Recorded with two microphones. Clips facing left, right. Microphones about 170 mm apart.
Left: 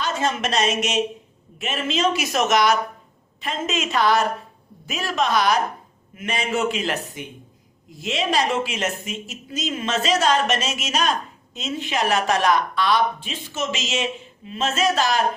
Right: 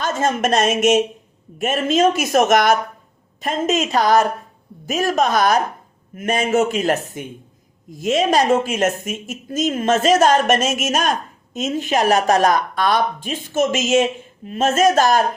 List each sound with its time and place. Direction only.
0.0 s speech: 45° right (ahead or behind)